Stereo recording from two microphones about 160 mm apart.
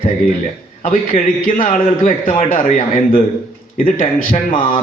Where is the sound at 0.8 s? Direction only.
60° left (ahead or behind).